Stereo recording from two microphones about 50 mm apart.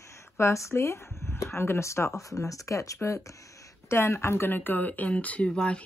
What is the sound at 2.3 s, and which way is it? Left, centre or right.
Speech, left.